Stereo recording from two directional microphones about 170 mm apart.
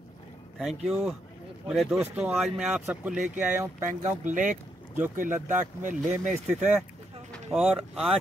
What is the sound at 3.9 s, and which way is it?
Speech, 50° right (ahead or behind).